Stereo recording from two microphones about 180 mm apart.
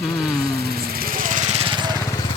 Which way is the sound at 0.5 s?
60° right (ahead or behind).